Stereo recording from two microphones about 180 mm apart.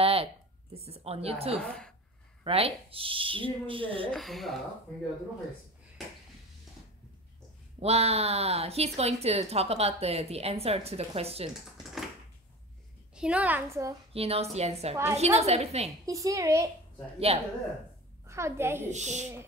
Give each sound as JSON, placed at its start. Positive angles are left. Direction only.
{"t": 0.0, "sound": "a sound", "side_deg": -30}
{"t": 0.7, "sound": "speech", "side_deg": -35}
{"t": 1.6, "sound": "a woman's voice", "side_deg": 5}
{"t": 2.4, "sound": "speech", "side_deg": -30}
{"t": 4.1, "sound": "speech", "side_deg": 0}
{"t": 7.8, "sound": "speech", "side_deg": -35}
{"t": 13.1, "sound": "a child's voice", "side_deg": -5}
{"t": 14.1, "sound": "speech", "side_deg": -35}
{"t": 16.1, "sound": "a child's voice", "side_deg": -20}
{"t": 17.3, "sound": "speech", "side_deg": -35}
{"t": 18.2, "sound": "a child's voice", "side_deg": -15}
{"t": 18.9, "sound": "speech", "side_deg": -40}